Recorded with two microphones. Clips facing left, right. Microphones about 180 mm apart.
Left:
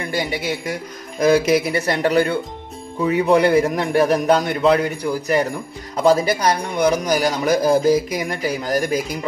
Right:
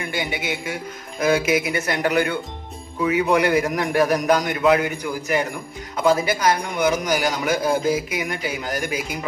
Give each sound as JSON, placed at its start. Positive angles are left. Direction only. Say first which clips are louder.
{"t": 0.1, "sound": "a man's voice", "louder": "left 5 dB", "side_deg": 35}